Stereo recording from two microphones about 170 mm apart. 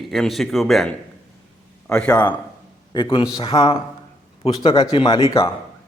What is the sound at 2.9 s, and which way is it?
Speech, 30° left (ahead or behind).